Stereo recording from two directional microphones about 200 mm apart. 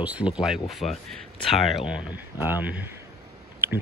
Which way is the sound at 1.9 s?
10° right (ahead or behind).